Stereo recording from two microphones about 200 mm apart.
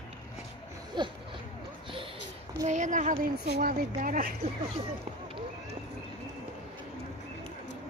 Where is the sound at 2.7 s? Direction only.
40° right (ahead or behind).